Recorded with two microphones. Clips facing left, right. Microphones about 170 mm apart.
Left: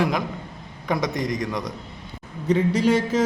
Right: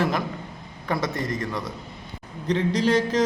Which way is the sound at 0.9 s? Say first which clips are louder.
Left 2 dB; 15° left (ahead or behind).